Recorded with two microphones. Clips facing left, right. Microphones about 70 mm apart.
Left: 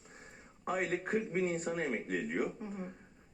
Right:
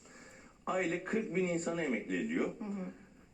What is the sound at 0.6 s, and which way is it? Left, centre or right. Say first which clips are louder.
Speech: even; centre.